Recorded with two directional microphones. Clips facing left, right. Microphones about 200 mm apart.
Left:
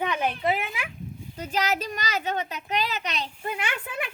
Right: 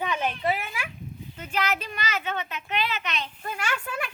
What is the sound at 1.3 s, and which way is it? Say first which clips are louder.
A child's voice: left 2 dB; 35° left (ahead or behind).